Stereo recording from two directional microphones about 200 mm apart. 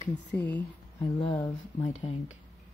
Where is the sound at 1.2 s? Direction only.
25° left (ahead or behind).